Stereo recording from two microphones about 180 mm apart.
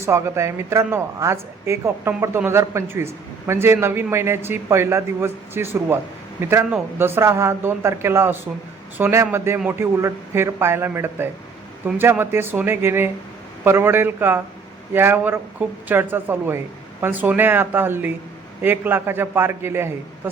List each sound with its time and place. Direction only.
0.0 s speech: 15° right (ahead or behind)